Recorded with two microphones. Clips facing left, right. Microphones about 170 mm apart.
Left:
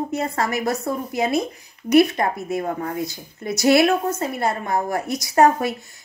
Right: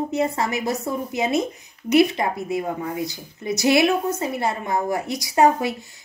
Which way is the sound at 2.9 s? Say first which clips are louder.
Left 1 dB; 20° right (ahead or behind).